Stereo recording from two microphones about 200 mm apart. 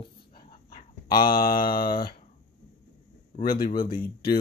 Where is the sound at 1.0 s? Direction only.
20° left (ahead or behind).